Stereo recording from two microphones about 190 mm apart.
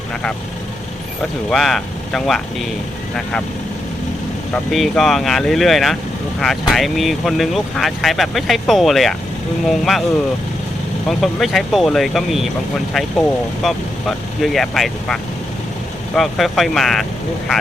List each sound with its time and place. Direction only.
1.2 s speech: centre (ahead or behind)
4.5 s speech: centre (ahead or behind)
11.1 s speech: centre (ahead or behind)